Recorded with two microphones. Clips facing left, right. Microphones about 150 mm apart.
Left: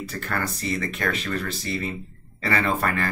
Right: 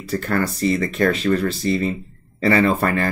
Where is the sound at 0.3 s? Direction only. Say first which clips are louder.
Right 8 dB; 35° right (ahead or behind).